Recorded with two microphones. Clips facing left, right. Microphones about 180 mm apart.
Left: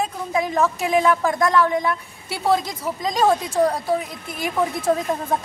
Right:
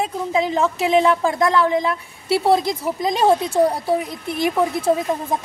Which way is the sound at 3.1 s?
25° right (ahead or behind).